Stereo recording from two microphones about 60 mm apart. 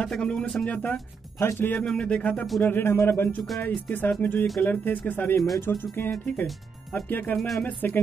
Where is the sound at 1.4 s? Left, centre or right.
Left.